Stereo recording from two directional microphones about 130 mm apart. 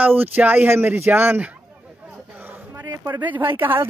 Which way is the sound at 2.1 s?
15° right (ahead or behind).